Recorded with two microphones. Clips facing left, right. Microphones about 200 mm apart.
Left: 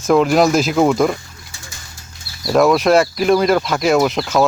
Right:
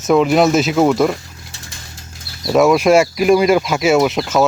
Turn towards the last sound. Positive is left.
turn(degrees=-5)  # may be behind; listen again after turning